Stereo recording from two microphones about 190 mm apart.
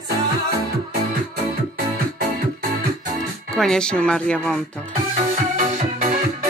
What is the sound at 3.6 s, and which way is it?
Speech, 5° left (ahead or behind).